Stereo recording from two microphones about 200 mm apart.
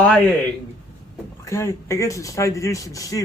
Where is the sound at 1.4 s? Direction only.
15° left (ahead or behind).